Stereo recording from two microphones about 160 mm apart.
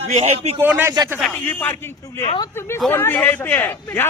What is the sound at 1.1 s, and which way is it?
A man's voice, 10° left (ahead or behind).